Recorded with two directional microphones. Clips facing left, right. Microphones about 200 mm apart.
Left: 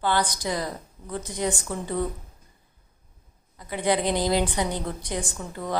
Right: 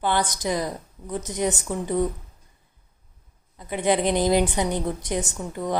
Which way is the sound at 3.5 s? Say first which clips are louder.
Right 2 dB; 20° right (ahead or behind).